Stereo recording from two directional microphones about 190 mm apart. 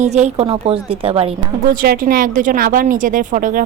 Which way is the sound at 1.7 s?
50° right (ahead or behind).